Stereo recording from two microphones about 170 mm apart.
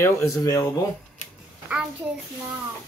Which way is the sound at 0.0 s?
20° left (ahead or behind).